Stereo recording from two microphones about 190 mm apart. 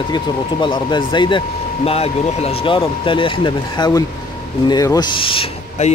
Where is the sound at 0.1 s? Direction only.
25° left (ahead or behind).